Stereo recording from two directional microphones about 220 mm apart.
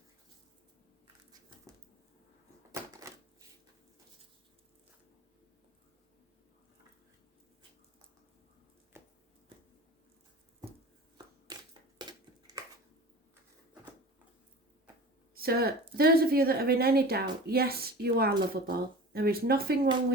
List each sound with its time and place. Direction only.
3.1 s shuffling cards: 15° right (ahead or behind)
11.4 s a sound: 20° right (ahead or behind)
15.4 s a woman's voice: 45° right (ahead or behind)